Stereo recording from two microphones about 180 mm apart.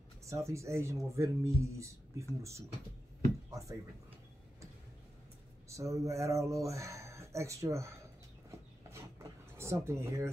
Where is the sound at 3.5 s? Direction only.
15° right (ahead or behind).